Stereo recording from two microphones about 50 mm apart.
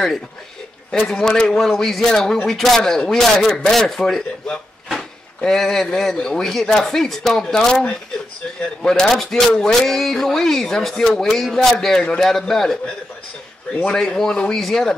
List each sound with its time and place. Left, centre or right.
0.9 s speech: centre
5.4 s speech: centre
8.8 s speech: centre
13.8 s speech: centre